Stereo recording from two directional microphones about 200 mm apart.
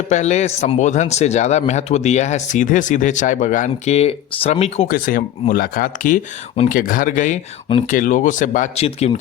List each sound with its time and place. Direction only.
0.1 s speech: 35° left (ahead or behind)